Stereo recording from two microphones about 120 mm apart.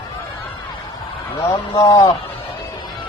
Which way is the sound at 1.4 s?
25° left (ahead or behind).